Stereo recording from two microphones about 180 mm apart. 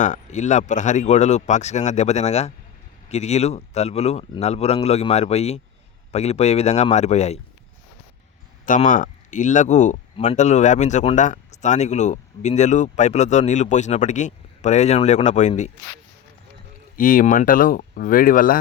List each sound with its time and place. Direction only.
0.0 s speech: 40° left (ahead or behind)
8.6 s speech: 45° left (ahead or behind)
17.0 s speech: 50° left (ahead or behind)